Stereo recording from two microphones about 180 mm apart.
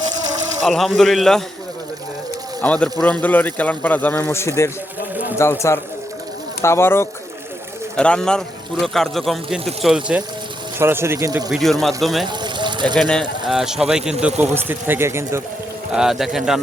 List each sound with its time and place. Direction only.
0.6 s speech: centre (ahead or behind)
2.6 s speech: 5° left (ahead or behind); by 11.5 s 20° right (ahead or behind)
11.5 s speech: centre (ahead or behind)
12.3 s a sound: 25° right (ahead or behind)
13.0 s speech: 5° left (ahead or behind); by 15.4 s 15° right (ahead or behind)
15.9 s speech: 5° right (ahead or behind)